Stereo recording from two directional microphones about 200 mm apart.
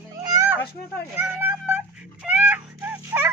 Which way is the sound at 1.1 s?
10° right (ahead or behind).